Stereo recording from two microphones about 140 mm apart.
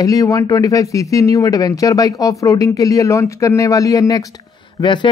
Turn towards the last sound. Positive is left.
turn(degrees=35)  # may be behind; listen again after turning